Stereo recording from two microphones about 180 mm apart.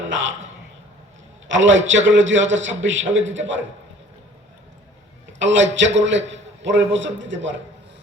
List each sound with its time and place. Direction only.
0.0 s a sound: 90° right
1.5 s a man's voice: 90° right
5.4 s a man's voice: 90° right